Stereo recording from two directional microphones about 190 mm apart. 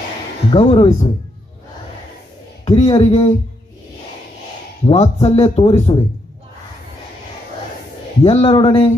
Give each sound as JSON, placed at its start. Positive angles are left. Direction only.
{"t": 0.5, "sound": "speech", "side_deg": 30}
{"t": 2.6, "sound": "speech", "side_deg": 30}
{"t": 4.8, "sound": "speech", "side_deg": 35}
{"t": 8.2, "sound": "speech", "side_deg": 30}